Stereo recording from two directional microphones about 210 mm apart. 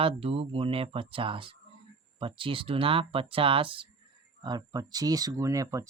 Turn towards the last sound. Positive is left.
turn(degrees=-15)  # may be behind; listen again after turning